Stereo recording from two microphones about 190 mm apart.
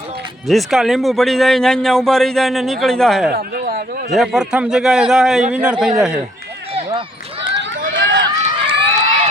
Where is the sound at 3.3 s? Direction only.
50° right (ahead or behind).